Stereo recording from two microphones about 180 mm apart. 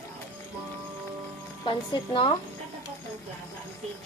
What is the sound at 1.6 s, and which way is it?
Speech, 25° left (ahead or behind).